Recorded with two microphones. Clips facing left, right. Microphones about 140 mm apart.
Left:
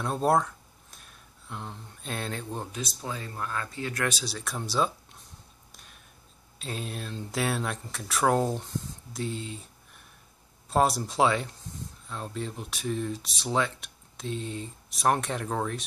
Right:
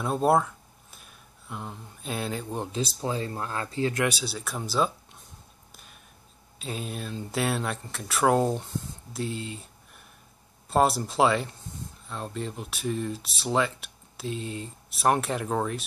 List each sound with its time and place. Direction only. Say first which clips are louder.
0.0 s speech: right 2 dB; 5° right (ahead or behind)
2.6 s speech: right 6 dB; 30° right (ahead or behind)
4.0 s speech: right 3 dB; 5° right (ahead or behind)
5.7 s a sound: right 2 dB; 5° right (ahead or behind)
6.6 s speech: right 2 dB; centre (ahead or behind)
10.7 s speech: right 2 dB; centre (ahead or behind)